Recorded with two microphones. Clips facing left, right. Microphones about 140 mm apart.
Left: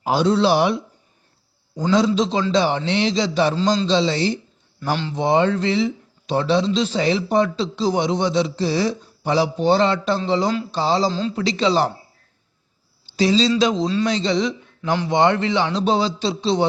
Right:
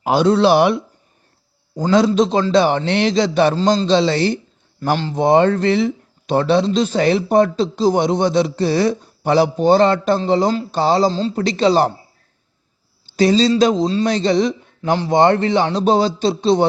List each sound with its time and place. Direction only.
0.0 s a man's voice: 60° right (ahead or behind)
4.8 s speech: 40° right (ahead or behind)
11.1 s speech: 40° right (ahead or behind)
13.1 s speech: 50° right (ahead or behind)
14.1 s speech: 50° right (ahead or behind)
14.9 s speech: 40° right (ahead or behind)